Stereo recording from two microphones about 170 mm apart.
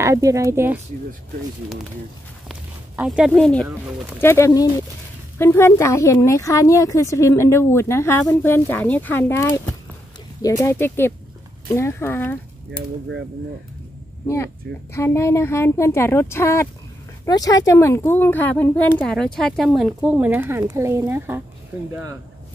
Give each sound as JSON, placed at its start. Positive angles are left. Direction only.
{"t": 0.0, "sound": "a woman's voice", "side_deg": -20}
{"t": 3.0, "sound": "a woman's voice", "side_deg": 0}
{"t": 4.2, "sound": "a woman's voice", "side_deg": 15}
{"t": 14.2, "sound": "a woman's voice", "side_deg": 15}